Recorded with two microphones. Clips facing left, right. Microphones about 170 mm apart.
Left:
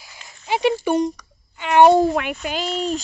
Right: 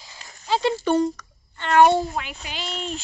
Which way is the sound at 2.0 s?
65° left (ahead or behind).